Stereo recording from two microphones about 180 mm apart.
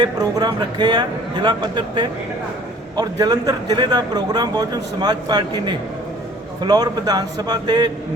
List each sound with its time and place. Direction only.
0.0 s a man's voice: 20° right (ahead or behind)